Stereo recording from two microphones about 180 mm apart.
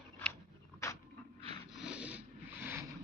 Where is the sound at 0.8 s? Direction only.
15° left (ahead or behind).